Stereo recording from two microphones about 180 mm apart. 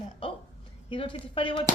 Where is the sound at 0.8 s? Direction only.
30° left (ahead or behind).